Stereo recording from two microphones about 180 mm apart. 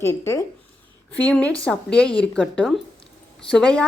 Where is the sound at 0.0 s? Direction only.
15° left (ahead or behind).